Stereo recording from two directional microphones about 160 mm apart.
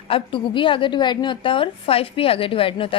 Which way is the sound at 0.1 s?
30° left (ahead or behind).